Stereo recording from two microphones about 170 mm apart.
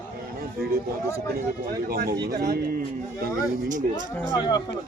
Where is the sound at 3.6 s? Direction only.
50° right (ahead or behind).